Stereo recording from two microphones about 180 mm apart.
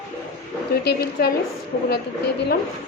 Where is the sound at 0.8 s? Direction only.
65° left (ahead or behind).